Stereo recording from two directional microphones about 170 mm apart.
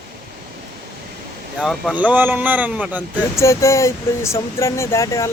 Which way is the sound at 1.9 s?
10° right (ahead or behind).